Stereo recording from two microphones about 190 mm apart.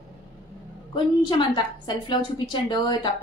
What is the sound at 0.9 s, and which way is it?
A woman's voice, 25° left (ahead or behind).